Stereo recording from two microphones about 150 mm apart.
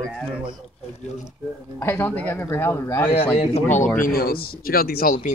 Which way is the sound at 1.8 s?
15° left (ahead or behind).